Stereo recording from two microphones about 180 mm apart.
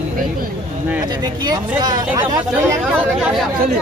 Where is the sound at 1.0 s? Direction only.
20° right (ahead or behind).